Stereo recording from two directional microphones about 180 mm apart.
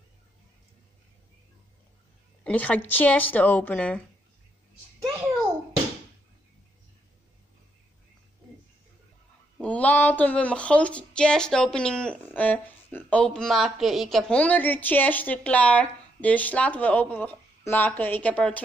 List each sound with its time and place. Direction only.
2.4 s speech: 10° left (ahead or behind)
9.6 s speech: 10° left (ahead or behind)